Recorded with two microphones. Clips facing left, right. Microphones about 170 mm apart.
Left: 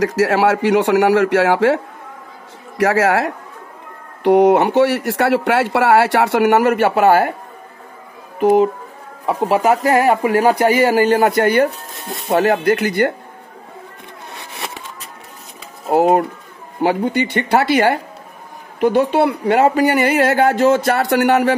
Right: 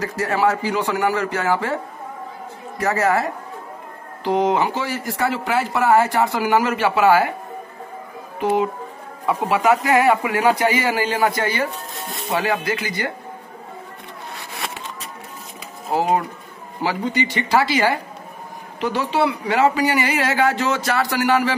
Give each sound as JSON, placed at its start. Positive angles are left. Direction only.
{"t": 0.0, "sound": "a man's voice", "side_deg": 85}
{"t": 2.8, "sound": "a man's voice", "side_deg": 85}
{"t": 4.2, "sound": "speech", "side_deg": 65}
{"t": 8.4, "sound": "speech", "side_deg": 45}
{"t": 12.3, "sound": "speech", "side_deg": 50}
{"t": 15.9, "sound": "speech", "side_deg": 55}